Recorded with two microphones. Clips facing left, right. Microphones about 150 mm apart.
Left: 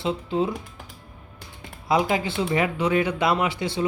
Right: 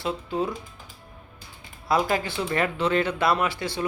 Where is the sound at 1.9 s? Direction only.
15° left (ahead or behind).